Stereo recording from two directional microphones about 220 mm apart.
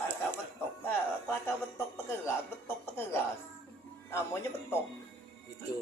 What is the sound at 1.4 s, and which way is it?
Speech, 10° left (ahead or behind).